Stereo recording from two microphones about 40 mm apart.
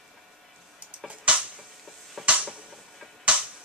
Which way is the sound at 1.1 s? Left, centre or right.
Right.